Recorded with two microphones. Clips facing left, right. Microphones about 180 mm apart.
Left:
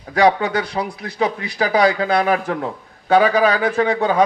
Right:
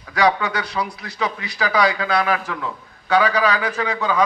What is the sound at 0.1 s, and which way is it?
A man's voice, 50° left (ahead or behind).